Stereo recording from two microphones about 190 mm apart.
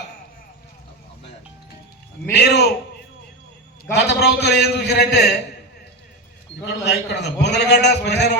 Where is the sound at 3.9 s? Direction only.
60° left (ahead or behind).